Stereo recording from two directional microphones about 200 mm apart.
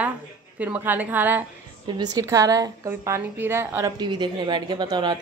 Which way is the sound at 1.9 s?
20° right (ahead or behind).